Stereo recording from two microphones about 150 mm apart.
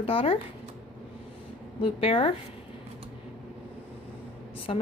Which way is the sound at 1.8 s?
35° left (ahead or behind).